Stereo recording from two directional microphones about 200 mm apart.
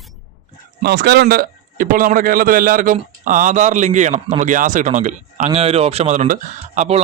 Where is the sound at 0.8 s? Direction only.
55° right (ahead or behind).